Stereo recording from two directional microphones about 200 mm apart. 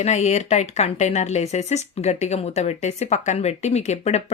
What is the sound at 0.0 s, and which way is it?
Speech, 35° left (ahead or behind).